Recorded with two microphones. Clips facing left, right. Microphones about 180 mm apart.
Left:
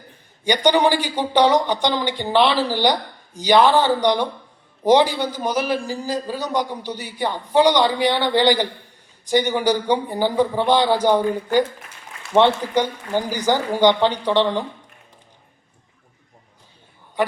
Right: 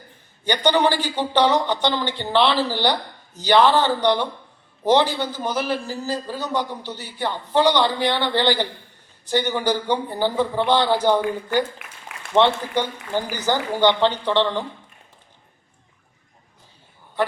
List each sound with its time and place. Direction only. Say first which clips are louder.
0.4 s speech: left 2 dB; 10° left (ahead or behind)
12.3 s speech: left 2 dB; 15° left (ahead or behind)